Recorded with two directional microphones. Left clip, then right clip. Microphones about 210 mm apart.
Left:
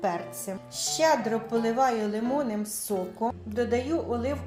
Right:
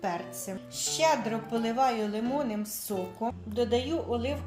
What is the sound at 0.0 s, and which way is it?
A woman's voice, 10° left (ahead or behind).